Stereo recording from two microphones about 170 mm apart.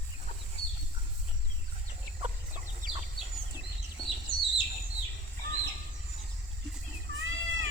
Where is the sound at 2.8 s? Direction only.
50° right (ahead or behind).